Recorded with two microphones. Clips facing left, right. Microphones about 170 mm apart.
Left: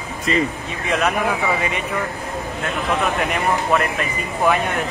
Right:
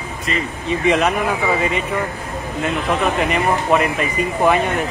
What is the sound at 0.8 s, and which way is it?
Speech, centre (ahead or behind).